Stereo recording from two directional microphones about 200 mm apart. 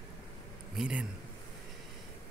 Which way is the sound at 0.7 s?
5° right (ahead or behind).